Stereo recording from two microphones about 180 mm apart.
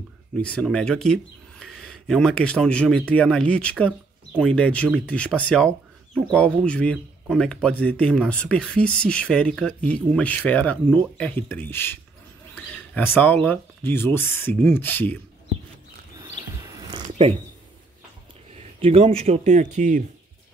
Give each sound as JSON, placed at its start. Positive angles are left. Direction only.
{"t": 0.4, "sound": "speech", "side_deg": 5}
{"t": 16.9, "sound": "a sound", "side_deg": -30}
{"t": 18.8, "sound": "speech", "side_deg": -30}